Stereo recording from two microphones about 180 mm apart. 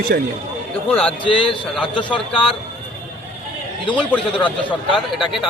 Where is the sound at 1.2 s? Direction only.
30° left (ahead or behind).